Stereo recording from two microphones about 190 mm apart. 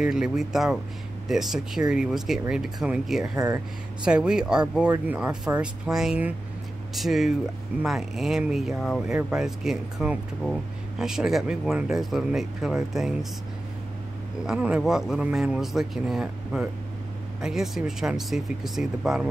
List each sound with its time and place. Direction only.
0.0 s speech: 5° right (ahead or behind)
3.3 s speech: 20° right (ahead or behind)
4.0 s speech: 5° right (ahead or behind)
14.4 s speech: 5° right (ahead or behind)